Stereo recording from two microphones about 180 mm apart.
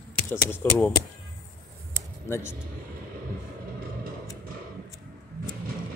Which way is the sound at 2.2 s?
15° left (ahead or behind).